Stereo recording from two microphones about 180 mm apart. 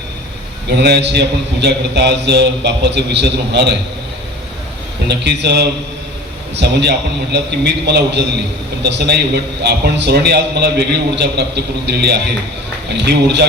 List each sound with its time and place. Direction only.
0.7 s a man's voice: 65° right (ahead or behind)
5.0 s a man's voice: 70° right (ahead or behind)